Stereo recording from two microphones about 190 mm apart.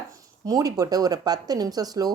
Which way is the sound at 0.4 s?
20° right (ahead or behind).